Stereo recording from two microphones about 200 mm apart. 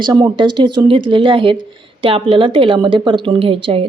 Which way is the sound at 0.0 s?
20° right (ahead or behind).